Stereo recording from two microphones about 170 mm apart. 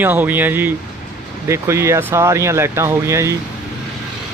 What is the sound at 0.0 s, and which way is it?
Speech, 10° right (ahead or behind).